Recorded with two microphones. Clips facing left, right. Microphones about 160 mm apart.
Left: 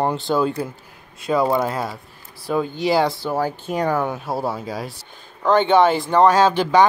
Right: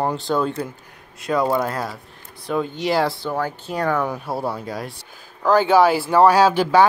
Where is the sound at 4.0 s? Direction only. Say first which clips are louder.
Left 1 dB; centre (ahead or behind).